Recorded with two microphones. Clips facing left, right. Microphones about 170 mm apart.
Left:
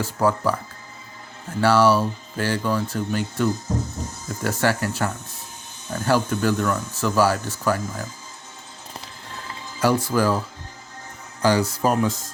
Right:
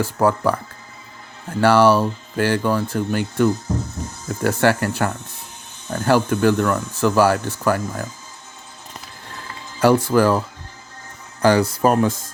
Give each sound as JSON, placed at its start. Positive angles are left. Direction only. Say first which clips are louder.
{"t": 0.0, "sound": "speech", "louder": "right 3 dB", "side_deg": -55}
{"t": 1.6, "sound": "speech", "louder": "right 3 dB", "side_deg": -60}
{"t": 4.4, "sound": "speech", "louder": "right 5 dB", "side_deg": -55}
{"t": 9.8, "sound": "speech", "louder": "right 5 dB", "side_deg": -60}
{"t": 11.4, "sound": "speech", "louder": "right 4 dB", "side_deg": -55}